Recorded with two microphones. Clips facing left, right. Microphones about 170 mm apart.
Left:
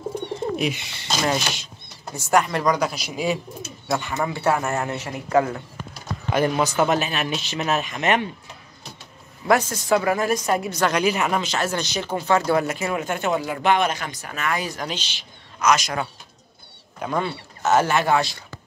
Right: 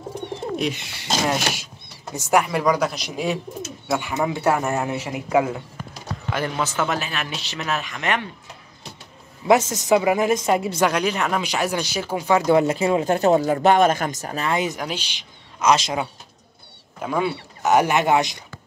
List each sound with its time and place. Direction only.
1.0 s a man's voice: 5° right (ahead or behind)
6.3 s speech: 15° left (ahead or behind)
9.5 s speech: 20° right (ahead or behind)
10.8 s speech: centre (ahead or behind)
11.4 s speech: 10° right (ahead or behind)
14.8 s a man's voice: 10° right (ahead or behind)
15.6 s speech: 25° right (ahead or behind)
17.0 s a man's voice: 5° right (ahead or behind)